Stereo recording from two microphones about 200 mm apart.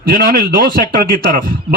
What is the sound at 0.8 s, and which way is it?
Speech, 20° left (ahead or behind).